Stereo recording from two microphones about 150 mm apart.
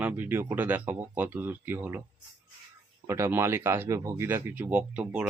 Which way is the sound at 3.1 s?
15° right (ahead or behind).